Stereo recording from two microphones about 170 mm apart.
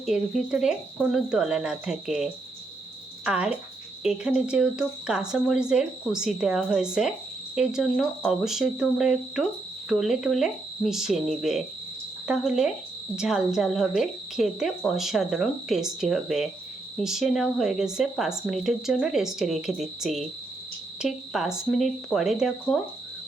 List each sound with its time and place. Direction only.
0.0 s speech: 5° right (ahead or behind)